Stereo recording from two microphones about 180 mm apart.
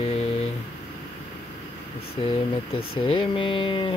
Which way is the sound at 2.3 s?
30° left (ahead or behind).